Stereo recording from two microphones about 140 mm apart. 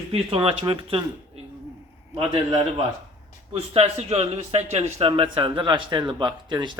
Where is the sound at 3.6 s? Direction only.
45° right (ahead or behind).